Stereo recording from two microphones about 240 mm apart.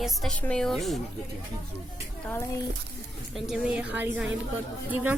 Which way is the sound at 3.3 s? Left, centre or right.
Centre.